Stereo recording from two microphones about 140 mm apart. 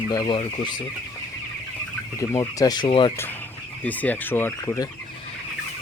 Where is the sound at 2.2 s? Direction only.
25° left (ahead or behind).